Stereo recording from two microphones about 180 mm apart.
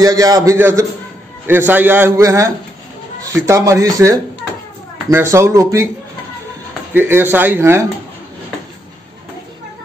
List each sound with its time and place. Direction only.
0.0 s a man's voice: 20° right (ahead or behind)
6.9 s speech: 10° right (ahead or behind)